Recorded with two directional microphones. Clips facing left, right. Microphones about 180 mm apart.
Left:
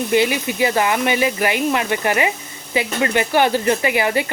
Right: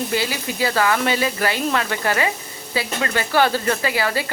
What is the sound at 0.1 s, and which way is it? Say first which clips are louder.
Speech: left 6 dB; 20° left (ahead or behind).